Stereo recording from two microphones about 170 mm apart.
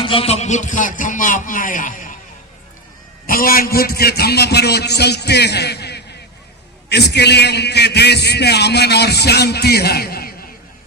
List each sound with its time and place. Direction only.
0.0 s speech: 35° left (ahead or behind); by 2.1 s 50° left (ahead or behind)
3.2 s a man's voice: 60° left (ahead or behind)